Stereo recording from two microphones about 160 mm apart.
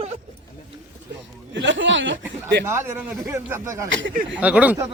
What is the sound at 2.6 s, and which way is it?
A man's voice, 15° right (ahead or behind).